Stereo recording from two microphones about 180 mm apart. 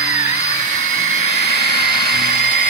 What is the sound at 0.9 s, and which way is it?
Helicopter, 35° left (ahead or behind).